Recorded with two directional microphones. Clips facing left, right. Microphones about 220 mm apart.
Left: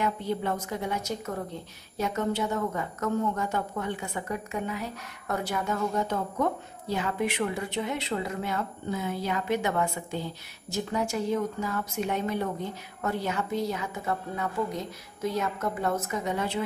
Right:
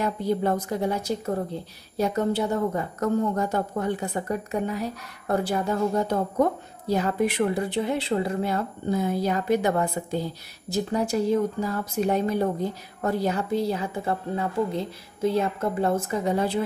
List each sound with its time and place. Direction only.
0.0 s a woman's voice: 40° right (ahead or behind)